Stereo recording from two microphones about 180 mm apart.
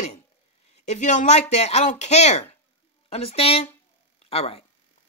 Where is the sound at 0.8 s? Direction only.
40° left (ahead or behind).